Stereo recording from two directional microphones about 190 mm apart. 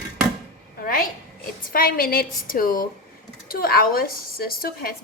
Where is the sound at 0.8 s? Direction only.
50° left (ahead or behind).